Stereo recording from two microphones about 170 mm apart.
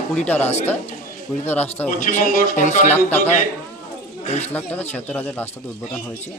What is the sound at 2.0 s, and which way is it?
Speech, 50° left (ahead or behind).